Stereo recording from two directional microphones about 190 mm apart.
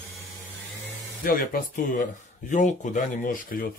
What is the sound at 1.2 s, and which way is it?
Speech, 50° left (ahead or behind).